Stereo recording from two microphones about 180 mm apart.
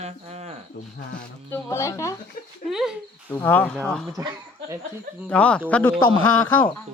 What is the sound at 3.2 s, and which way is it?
Speech, 10° left (ahead or behind).